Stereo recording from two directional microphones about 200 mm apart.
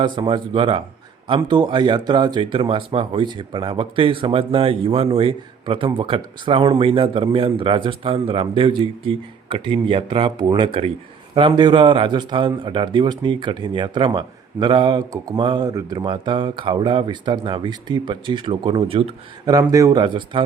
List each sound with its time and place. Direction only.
0.0 s speech: 25° right (ahead or behind)